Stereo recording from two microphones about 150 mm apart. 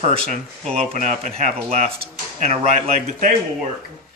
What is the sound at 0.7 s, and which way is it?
Speech, 50° right (ahead or behind).